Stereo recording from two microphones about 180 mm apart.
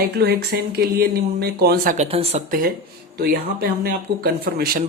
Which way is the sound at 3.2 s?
60° right (ahead or behind).